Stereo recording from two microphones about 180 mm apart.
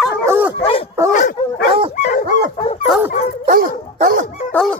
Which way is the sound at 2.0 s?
45° left (ahead or behind).